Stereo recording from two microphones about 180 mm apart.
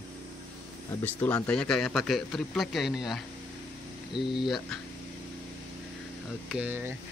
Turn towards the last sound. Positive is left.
turn(degrees=-10)  # may be behind; listen again after turning